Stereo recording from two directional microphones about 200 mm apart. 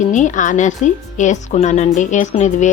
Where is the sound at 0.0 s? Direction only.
40° left (ahead or behind).